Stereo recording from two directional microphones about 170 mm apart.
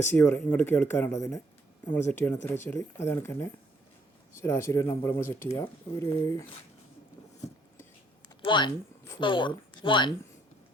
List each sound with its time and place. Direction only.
0.1 s speech: 10° left (ahead or behind)
8.4 s speech: 25° left (ahead or behind)